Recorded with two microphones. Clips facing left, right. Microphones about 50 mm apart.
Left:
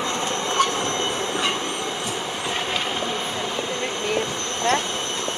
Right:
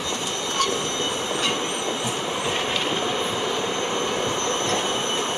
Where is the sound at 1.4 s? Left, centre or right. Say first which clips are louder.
Even; centre.